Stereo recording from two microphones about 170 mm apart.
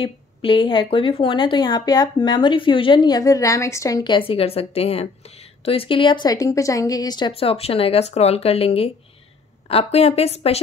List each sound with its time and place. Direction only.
0.0 s speech: 30° left (ahead or behind)
4.3 s a woman's voice: 35° left (ahead or behind)